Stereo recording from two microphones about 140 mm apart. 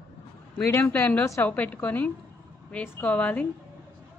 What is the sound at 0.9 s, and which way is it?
A woman's voice, 15° left (ahead or behind).